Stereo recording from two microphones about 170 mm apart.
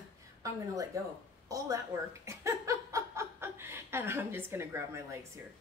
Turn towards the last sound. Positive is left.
turn(degrees=-15)  # may be behind; listen again after turning